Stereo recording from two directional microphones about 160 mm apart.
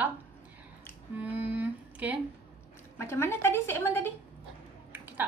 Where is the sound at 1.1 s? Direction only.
10° right (ahead or behind).